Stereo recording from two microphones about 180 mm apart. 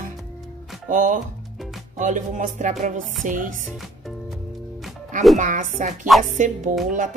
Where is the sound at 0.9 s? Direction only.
45° right (ahead or behind).